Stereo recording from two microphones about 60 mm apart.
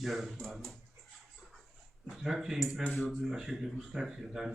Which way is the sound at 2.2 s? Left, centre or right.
Centre.